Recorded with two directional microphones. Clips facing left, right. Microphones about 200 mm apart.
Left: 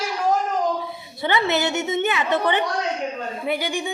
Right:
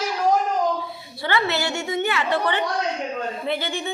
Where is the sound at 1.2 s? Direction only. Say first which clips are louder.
Left 2 dB; 20° left (ahead or behind).